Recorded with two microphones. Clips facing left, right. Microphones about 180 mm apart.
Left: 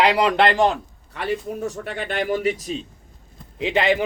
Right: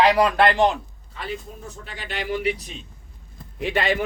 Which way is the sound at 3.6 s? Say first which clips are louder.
Left 3 dB; 15° left (ahead or behind).